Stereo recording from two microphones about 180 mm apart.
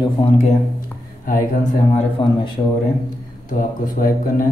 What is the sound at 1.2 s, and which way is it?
Speech, 50° left (ahead or behind).